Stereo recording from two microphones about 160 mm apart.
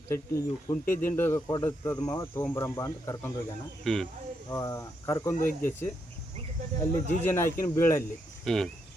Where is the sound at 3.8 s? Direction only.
5° left (ahead or behind).